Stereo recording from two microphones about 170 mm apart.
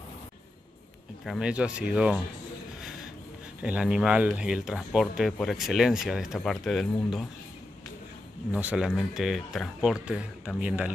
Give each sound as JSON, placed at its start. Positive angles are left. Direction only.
{"t": 1.2, "sound": "speech", "side_deg": 0}
{"t": 3.6, "sound": "a man's voice", "side_deg": -5}
{"t": 8.5, "sound": "speech", "side_deg": -10}